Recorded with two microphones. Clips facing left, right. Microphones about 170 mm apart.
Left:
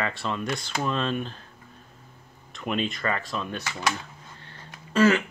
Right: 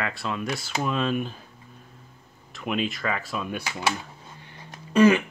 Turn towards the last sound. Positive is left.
turn(degrees=-15)  # may be behind; listen again after turning